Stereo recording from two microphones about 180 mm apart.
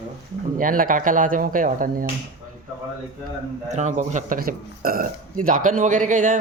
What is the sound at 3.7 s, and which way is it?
A man's voice, 40° right (ahead or behind).